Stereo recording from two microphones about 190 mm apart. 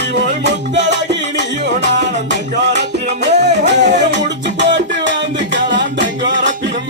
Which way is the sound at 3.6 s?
65° right (ahead or behind).